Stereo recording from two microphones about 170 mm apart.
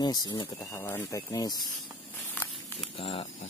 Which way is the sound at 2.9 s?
35° left (ahead or behind).